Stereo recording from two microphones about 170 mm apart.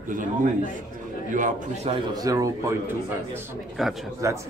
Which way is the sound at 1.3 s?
50° right (ahead or behind).